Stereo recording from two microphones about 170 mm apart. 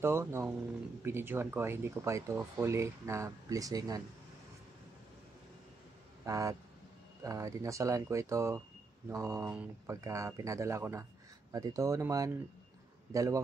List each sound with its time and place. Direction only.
0.0 s speech: 15° right (ahead or behind)
6.2 s speech: 20° right (ahead or behind)
9.5 s speech: 5° right (ahead or behind)
9.9 s speech: 15° right (ahead or behind)